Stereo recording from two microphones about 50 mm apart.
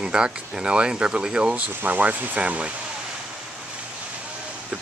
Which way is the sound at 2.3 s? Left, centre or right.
Right.